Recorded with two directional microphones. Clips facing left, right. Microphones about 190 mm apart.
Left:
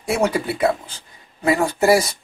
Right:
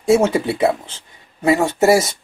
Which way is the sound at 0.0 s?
25° right (ahead or behind).